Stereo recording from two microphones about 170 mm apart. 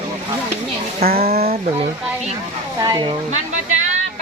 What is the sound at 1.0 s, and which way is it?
Speech, 65° right (ahead or behind).